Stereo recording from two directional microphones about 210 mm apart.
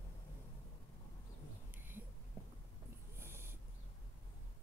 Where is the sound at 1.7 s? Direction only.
10° right (ahead or behind).